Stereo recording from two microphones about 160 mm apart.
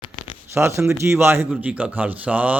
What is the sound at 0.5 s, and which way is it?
A man's voice, 15° right (ahead or behind).